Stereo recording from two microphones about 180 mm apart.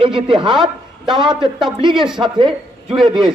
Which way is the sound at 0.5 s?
Centre (ahead or behind).